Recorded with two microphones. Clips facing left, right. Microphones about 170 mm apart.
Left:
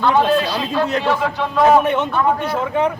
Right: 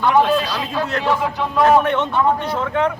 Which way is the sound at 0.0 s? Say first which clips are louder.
Even; 10° right (ahead or behind).